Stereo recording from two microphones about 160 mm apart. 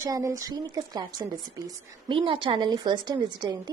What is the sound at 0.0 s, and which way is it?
A woman's voice, 20° right (ahead or behind).